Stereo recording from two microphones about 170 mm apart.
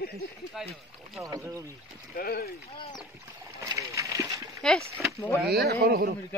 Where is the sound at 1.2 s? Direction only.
20° right (ahead or behind).